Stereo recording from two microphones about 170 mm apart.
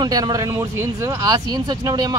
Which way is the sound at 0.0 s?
20° right (ahead or behind).